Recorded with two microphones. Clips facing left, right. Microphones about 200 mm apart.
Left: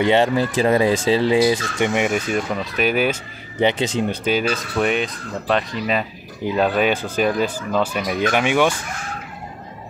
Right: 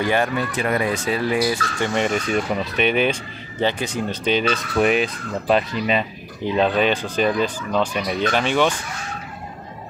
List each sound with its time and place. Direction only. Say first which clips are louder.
0.0 s speech: left 4 dB; 25° left (ahead or behind)
2.0 s speech: left 1 dB; 5° left (ahead or behind)
3.6 s speech: left 4 dB; 25° left (ahead or behind)
4.1 s speech: even; 5° left (ahead or behind)